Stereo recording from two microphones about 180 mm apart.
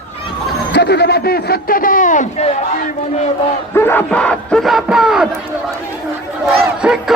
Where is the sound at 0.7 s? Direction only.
65° left (ahead or behind); by 2.5 s 40° left (ahead or behind).